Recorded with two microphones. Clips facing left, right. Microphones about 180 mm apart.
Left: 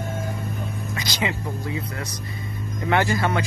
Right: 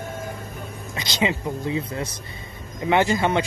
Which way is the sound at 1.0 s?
25° right (ahead or behind).